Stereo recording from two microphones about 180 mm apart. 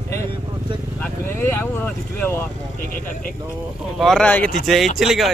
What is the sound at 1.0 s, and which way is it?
Speech, 10° left (ahead or behind).